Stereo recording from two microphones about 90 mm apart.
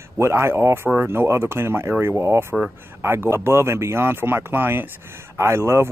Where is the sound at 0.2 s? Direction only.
30° right (ahead or behind).